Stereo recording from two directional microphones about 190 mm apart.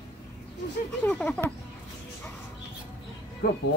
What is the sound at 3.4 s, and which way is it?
Music, 60° left (ahead or behind).